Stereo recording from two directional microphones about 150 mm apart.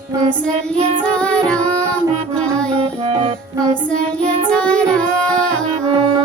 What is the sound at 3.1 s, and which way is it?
Music, 35° right (ahead or behind).